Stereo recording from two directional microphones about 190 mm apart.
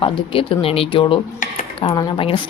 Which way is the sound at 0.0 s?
30° left (ahead or behind).